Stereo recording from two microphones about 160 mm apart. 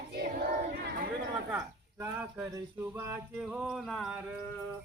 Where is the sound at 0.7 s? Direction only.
90° right.